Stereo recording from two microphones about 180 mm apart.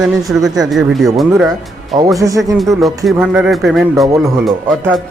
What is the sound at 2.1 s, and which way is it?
Speech, 20° right (ahead or behind).